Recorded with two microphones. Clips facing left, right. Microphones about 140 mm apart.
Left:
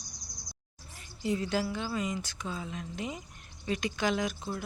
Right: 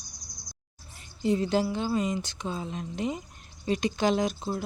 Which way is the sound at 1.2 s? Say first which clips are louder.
Right 5 dB; 25° right (ahead or behind).